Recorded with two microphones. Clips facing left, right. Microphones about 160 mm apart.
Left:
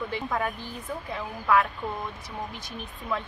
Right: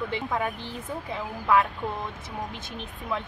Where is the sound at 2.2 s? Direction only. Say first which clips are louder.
Right 1 dB; 25° right (ahead or behind).